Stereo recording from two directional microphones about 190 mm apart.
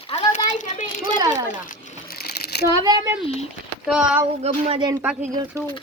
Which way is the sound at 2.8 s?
20° right (ahead or behind).